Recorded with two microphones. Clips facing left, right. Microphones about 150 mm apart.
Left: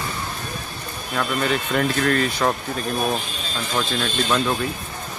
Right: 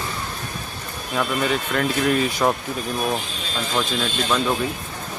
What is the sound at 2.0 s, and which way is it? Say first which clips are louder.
Speech: right 1 dB; 10° right (ahead or behind).